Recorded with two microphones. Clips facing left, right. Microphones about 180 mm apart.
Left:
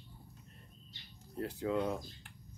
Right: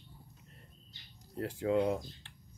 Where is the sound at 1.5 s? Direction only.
30° right (ahead or behind).